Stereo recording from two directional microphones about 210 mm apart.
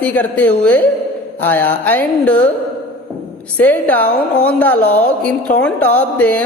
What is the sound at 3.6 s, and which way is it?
A man's voice, 10° left (ahead or behind).